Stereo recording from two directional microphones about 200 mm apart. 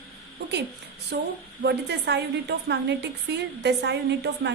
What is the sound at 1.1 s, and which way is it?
A woman's voice, 55° right (ahead or behind).